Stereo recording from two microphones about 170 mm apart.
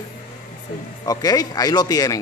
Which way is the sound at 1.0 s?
20° left (ahead or behind).